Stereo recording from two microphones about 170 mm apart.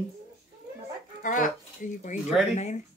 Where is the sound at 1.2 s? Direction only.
50° left (ahead or behind).